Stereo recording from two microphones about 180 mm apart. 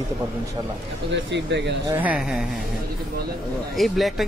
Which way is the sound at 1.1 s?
75° right (ahead or behind).